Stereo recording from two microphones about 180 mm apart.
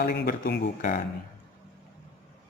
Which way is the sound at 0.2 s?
60° left (ahead or behind).